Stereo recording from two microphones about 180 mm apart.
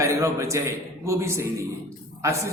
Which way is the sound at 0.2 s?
15° right (ahead or behind).